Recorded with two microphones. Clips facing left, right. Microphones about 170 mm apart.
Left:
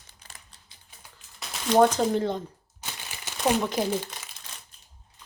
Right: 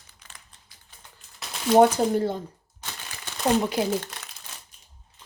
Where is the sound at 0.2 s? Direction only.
35° left (ahead or behind).